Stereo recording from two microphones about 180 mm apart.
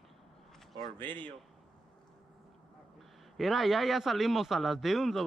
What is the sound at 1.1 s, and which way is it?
Speech, 25° right (ahead or behind).